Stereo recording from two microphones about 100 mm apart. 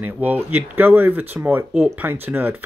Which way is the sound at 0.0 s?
20° right (ahead or behind).